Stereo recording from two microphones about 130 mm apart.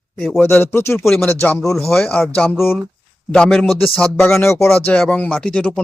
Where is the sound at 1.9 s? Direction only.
5° left (ahead or behind).